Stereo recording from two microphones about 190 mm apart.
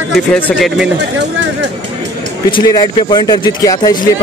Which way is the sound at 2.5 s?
20° left (ahead or behind).